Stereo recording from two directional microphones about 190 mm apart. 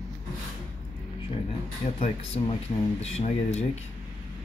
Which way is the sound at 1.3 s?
30° left (ahead or behind).